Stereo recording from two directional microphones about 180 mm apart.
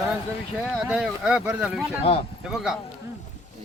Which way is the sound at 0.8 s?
5° right (ahead or behind).